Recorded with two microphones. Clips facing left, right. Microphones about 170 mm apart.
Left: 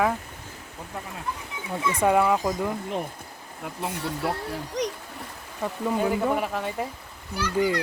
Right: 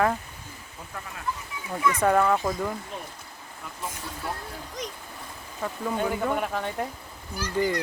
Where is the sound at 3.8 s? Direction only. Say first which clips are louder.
Left 6 dB; 65° left (ahead or behind).